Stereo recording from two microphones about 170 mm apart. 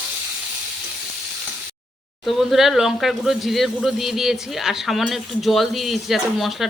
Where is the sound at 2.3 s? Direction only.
Centre (ahead or behind).